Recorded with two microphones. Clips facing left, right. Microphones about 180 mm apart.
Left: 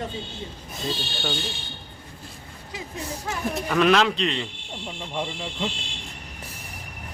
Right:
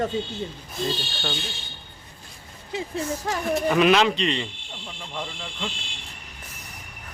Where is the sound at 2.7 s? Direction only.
25° right (ahead or behind).